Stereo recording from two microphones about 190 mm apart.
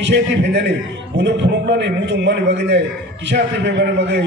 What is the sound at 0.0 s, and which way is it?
A man's voice, 65° right (ahead or behind).